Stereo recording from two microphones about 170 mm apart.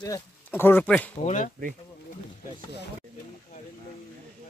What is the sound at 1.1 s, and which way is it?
Speech, 45° left (ahead or behind).